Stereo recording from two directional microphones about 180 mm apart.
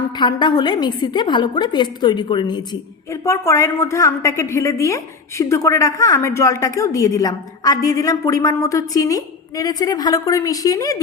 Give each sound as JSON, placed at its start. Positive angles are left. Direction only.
{"t": 0.2, "sound": "a woman's voice", "side_deg": 25}